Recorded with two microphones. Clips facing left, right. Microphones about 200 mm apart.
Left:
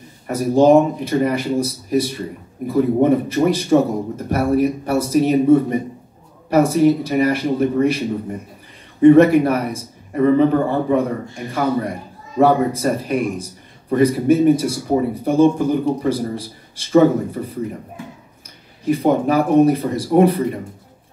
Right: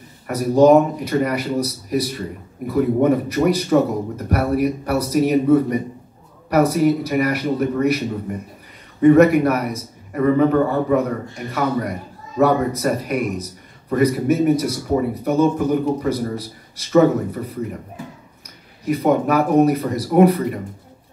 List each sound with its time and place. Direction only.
0.3 s a man's voice: 25° left (ahead or behind)
9.0 s a man's voice: 30° left (ahead or behind)
18.9 s a man's voice: 30° left (ahead or behind)